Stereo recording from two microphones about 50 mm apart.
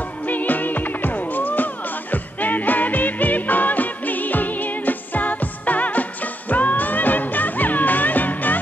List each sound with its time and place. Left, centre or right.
0.3 s music: left